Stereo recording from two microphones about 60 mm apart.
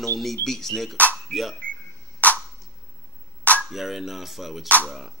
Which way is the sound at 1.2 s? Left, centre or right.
Centre.